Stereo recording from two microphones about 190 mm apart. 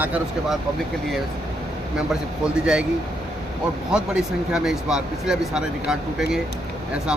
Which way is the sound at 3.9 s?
5° right (ahead or behind).